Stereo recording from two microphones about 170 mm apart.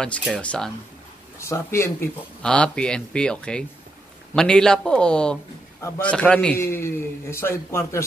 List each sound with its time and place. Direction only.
0.0 s a man's voice: 5° left (ahead or behind)
2.4 s a man's voice: 5° left (ahead or behind)